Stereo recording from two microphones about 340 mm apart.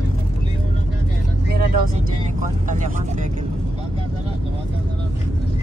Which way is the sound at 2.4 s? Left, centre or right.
Right.